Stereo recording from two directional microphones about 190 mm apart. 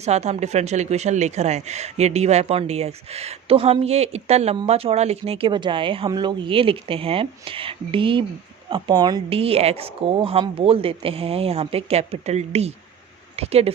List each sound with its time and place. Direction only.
0.0 s speech: 35° right (ahead or behind)